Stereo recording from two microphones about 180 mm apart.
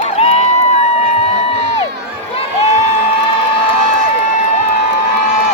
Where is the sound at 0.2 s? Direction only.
35° left (ahead or behind).